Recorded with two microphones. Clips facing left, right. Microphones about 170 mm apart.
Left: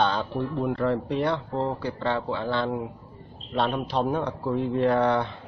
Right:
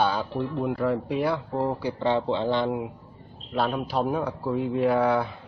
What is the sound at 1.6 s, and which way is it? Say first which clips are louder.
Speech: right 1 dB; 15° right (ahead or behind).